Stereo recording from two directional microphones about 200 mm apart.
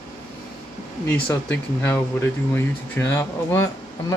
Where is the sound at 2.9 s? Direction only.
10° left (ahead or behind).